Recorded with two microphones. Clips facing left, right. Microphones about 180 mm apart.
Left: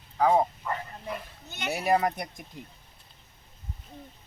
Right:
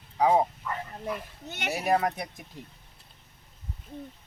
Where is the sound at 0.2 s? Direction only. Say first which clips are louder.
Even; 10° right (ahead or behind).